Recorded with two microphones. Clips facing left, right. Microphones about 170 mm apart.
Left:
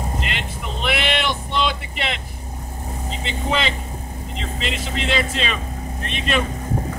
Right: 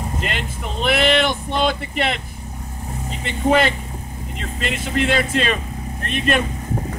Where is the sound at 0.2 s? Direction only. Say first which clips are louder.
Right 2 dB; 45° right (ahead or behind).